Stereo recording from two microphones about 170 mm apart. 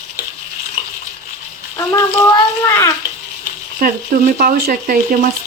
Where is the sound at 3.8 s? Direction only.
55° right (ahead or behind).